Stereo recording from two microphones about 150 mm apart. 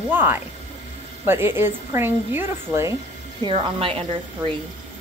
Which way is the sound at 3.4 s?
35° right (ahead or behind).